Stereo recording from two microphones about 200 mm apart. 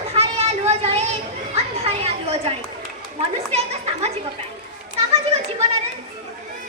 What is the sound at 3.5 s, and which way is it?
Children playing, 30° right (ahead or behind).